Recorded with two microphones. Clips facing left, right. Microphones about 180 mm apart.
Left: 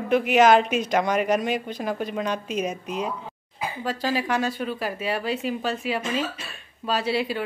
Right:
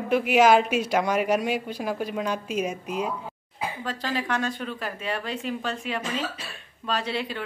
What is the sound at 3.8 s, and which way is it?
Speech, 10° left (ahead or behind).